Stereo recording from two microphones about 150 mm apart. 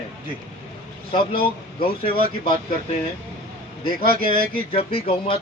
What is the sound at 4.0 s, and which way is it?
Speech, 70° right (ahead or behind).